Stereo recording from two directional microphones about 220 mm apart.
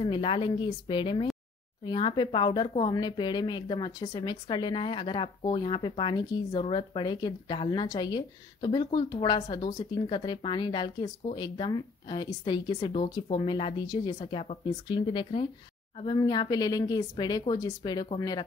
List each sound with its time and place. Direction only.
0.0 s a woman's voice: 20° left (ahead or behind)